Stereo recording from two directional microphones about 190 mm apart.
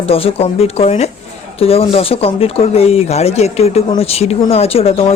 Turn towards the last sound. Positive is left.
turn(degrees=30)  # may be behind; listen again after turning